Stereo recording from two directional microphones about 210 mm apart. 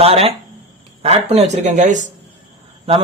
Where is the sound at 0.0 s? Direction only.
30° right (ahead or behind).